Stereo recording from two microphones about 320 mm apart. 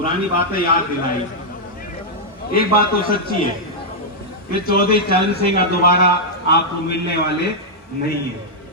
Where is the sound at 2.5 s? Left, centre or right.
Left.